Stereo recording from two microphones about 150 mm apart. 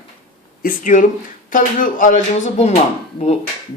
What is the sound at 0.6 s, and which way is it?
Speech, 60° left (ahead or behind).